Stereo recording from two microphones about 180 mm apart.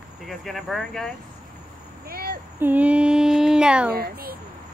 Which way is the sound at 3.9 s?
55° right (ahead or behind).